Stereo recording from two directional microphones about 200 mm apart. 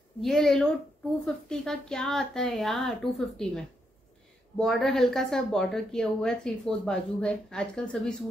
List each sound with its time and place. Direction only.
0.2 s speech: centre (ahead or behind)